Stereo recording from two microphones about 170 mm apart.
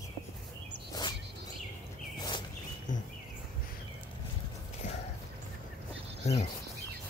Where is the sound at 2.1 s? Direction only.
25° left (ahead or behind).